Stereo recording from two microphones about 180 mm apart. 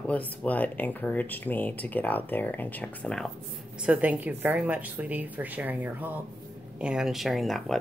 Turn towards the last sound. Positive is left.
turn(degrees=0)  # may be behind; listen again after turning